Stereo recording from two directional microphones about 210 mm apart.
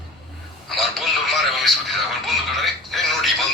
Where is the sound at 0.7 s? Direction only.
Centre (ahead or behind).